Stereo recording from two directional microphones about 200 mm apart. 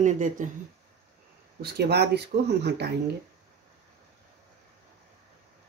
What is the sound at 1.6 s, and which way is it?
Speech, 55° right (ahead or behind).